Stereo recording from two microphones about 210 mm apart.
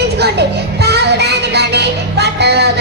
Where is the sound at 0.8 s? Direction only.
50° right (ahead or behind).